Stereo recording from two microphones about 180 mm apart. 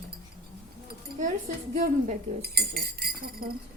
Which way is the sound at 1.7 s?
55° right (ahead or behind).